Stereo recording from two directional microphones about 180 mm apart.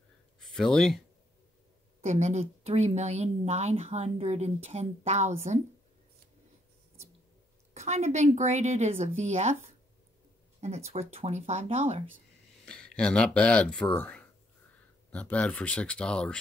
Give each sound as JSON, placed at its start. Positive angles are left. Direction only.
{"t": 0.5, "sound": "speech", "side_deg": 5}
{"t": 2.0, "sound": "a woman's voice", "side_deg": -40}
{"t": 7.7, "sound": "a woman's voice", "side_deg": -40}
{"t": 10.6, "sound": "a woman's voice", "side_deg": -40}
{"t": 12.6, "sound": "speech", "side_deg": 5}